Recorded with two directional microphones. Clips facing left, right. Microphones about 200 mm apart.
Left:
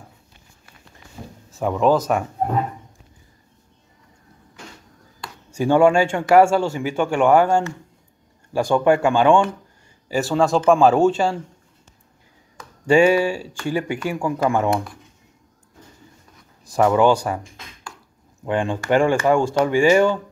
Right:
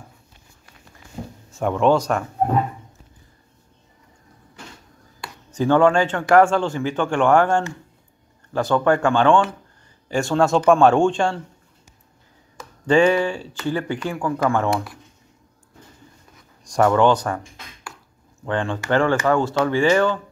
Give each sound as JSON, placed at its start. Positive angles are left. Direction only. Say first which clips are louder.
{"t": 1.5, "sound": "speech", "louder": "even", "side_deg": 0}
{"t": 5.5, "sound": "speech", "louder": "left 1 dB", "side_deg": 10}
{"t": 12.5, "sound": "speech", "louder": "left 1 dB", "side_deg": 10}
{"t": 16.6, "sound": "speech", "louder": "even", "side_deg": 5}
{"t": 18.4, "sound": "speech", "louder": "left 2 dB", "side_deg": 15}